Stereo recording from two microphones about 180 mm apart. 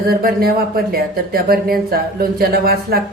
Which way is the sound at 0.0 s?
55° right (ahead or behind).